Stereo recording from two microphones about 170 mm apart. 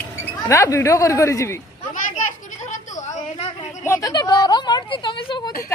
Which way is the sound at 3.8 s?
20° left (ahead or behind).